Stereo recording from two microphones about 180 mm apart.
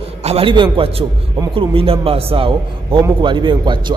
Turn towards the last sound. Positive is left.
turn(degrees=-25)  # may be behind; listen again after turning